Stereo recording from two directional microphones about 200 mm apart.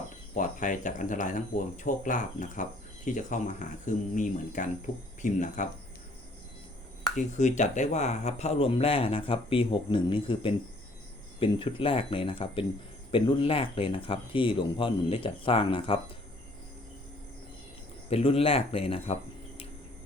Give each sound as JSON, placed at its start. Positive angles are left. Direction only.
{"t": 0.3, "sound": "speech", "side_deg": 40}
{"t": 7.2, "sound": "speech", "side_deg": 35}
{"t": 18.1, "sound": "speech", "side_deg": 30}